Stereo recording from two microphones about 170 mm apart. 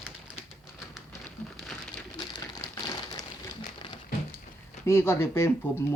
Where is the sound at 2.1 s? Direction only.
25° left (ahead or behind).